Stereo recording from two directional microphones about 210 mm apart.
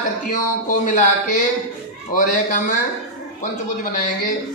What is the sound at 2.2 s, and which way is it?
A man's voice, 40° left (ahead or behind).